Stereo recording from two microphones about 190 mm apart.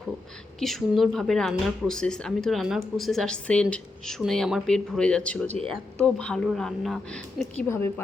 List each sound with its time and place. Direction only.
0.6 s speech: centre (ahead or behind)